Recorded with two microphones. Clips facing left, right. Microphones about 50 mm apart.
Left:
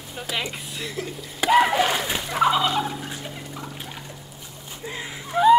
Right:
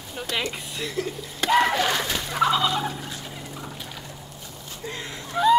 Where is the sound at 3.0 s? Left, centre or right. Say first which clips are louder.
Left 2 dB; centre.